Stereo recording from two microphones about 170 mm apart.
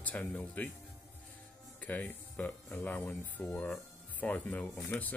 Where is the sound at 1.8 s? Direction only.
10° left (ahead or behind).